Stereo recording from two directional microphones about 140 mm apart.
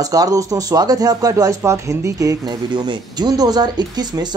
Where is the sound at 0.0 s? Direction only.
25° right (ahead or behind).